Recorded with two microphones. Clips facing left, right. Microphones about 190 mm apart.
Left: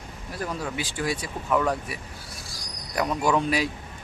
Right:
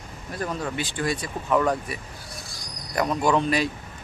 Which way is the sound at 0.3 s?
5° left (ahead or behind).